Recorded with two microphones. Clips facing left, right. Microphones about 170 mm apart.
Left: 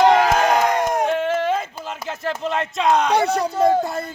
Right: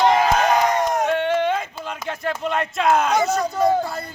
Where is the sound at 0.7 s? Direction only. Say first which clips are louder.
Even; 55° left (ahead or behind).